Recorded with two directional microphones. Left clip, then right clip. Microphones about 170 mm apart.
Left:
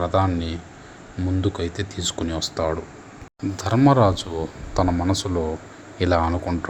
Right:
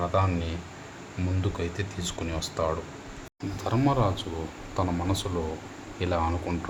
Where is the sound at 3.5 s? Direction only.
45° left (ahead or behind).